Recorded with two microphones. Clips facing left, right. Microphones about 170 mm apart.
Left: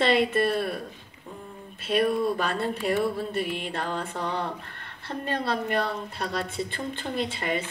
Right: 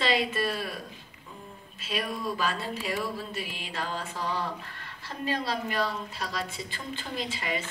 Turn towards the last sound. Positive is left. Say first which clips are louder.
# left 4 dB
turn(degrees=60)  # may be behind; listen again after turning